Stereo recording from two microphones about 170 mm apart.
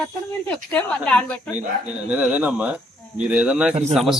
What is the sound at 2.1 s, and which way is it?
A man's voice, 10° right (ahead or behind).